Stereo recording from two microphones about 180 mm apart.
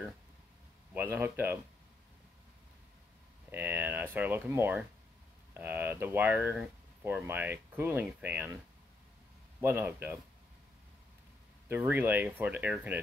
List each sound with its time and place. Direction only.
0.9 s speech: 10° right (ahead or behind)
3.5 s speech: 10° right (ahead or behind)
9.6 s speech: 15° right (ahead or behind)
11.7 s speech: 10° right (ahead or behind)